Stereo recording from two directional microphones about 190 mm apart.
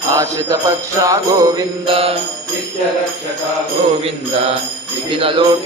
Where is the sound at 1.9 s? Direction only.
30° right (ahead or behind).